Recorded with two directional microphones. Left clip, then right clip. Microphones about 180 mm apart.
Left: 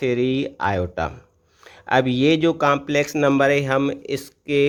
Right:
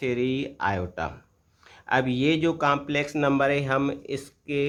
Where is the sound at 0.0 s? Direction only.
30° left (ahead or behind).